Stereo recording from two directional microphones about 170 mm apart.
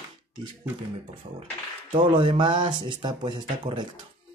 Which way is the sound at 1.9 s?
30° right (ahead or behind).